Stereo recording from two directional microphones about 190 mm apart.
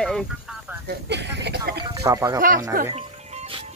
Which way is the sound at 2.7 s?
50° right (ahead or behind).